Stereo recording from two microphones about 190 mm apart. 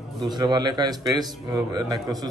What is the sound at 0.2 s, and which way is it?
A man's voice, 20° right (ahead or behind).